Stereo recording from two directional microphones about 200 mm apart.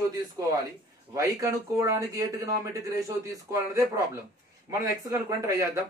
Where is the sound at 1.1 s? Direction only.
15° right (ahead or behind).